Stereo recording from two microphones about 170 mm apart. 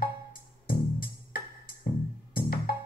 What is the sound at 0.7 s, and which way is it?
Music, 60° left (ahead or behind).